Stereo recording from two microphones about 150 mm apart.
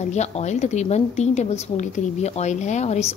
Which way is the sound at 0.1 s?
50° left (ahead or behind).